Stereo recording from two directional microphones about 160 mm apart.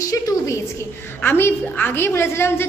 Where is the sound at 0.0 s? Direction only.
20° left (ahead or behind).